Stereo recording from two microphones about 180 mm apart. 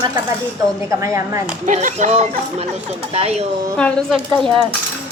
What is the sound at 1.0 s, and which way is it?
Speech, 15° right (ahead or behind).